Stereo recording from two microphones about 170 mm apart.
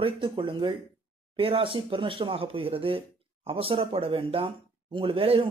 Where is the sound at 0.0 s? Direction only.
30° right (ahead or behind).